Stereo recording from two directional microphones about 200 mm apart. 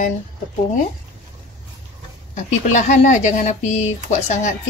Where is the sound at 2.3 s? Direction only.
35° left (ahead or behind).